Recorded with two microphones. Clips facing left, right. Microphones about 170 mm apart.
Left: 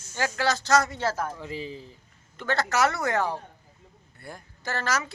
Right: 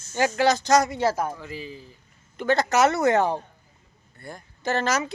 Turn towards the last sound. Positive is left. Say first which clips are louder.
# right 5 dB
turn(degrees=-20)  # may be behind; listen again after turning